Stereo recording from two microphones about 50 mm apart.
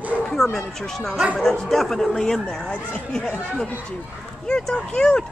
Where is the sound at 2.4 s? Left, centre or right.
Centre.